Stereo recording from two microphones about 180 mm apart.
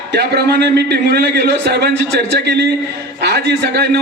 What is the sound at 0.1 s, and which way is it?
A man's voice, 65° right (ahead or behind).